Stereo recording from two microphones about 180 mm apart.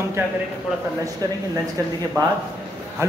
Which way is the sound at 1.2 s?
20° right (ahead or behind).